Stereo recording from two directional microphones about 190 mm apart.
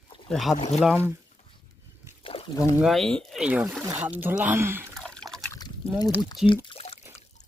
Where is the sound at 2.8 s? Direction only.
Centre (ahead or behind).